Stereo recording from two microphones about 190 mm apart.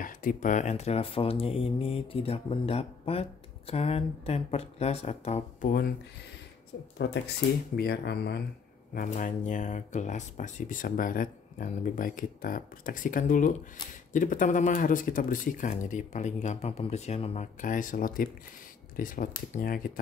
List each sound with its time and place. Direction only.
0.0 s speech: 45° left (ahead or behind)
5.7 s speech: 50° left (ahead or behind)
7.0 s speech: 60° left (ahead or behind)
8.9 s speech: 45° left (ahead or behind)